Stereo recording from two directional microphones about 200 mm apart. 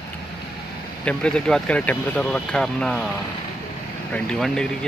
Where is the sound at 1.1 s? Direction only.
5° left (ahead or behind).